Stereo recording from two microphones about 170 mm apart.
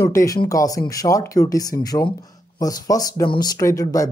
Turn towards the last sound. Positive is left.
turn(degrees=20)  # may be behind; listen again after turning